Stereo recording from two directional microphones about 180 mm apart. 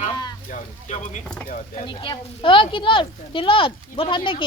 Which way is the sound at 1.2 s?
5° left (ahead or behind).